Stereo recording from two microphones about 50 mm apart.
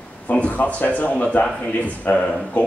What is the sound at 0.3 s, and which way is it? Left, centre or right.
Speech, left.